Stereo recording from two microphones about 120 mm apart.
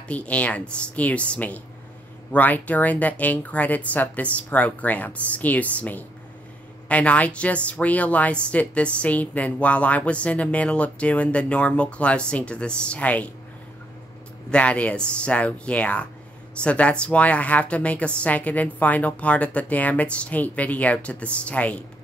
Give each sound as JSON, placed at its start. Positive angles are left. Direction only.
{"t": 0.1, "sound": "speech", "side_deg": 10}
{"t": 14.5, "sound": "speech", "side_deg": 10}